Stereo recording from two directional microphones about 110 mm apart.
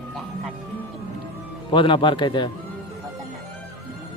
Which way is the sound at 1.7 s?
50° left (ahead or behind).